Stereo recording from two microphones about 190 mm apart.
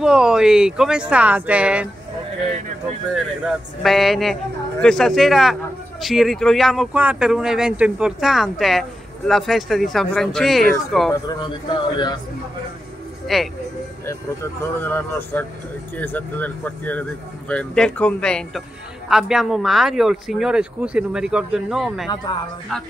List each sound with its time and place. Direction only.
0.0 s speech: 5° right (ahead or behind)
3.1 s speech: centre (ahead or behind)
11.1 s a man's voice: 25° left (ahead or behind)
13.3 s speech: centre (ahead or behind)
14.0 s speech: 10° left (ahead or behind)